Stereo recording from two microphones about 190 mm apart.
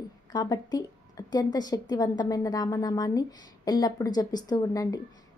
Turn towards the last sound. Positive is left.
turn(degrees=20)  # may be behind; listen again after turning